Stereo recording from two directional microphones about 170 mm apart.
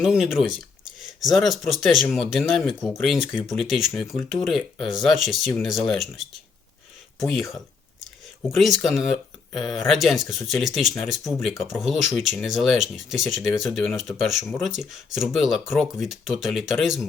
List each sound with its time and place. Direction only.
0.0 s speech: 5° right (ahead or behind)
8.4 s speech: centre (ahead or behind)